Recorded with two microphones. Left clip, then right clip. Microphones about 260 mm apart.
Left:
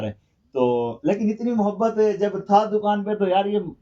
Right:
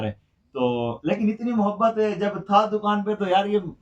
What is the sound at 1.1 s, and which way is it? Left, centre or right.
Speech, right.